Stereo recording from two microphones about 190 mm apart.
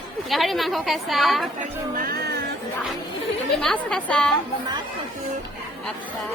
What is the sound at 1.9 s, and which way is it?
Music, 50° right (ahead or behind).